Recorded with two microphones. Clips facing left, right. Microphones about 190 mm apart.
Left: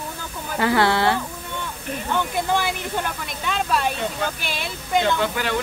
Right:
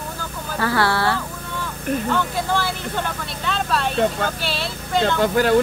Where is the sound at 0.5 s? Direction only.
20° left (ahead or behind).